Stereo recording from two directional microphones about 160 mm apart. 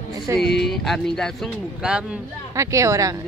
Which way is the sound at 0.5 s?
Centre (ahead or behind).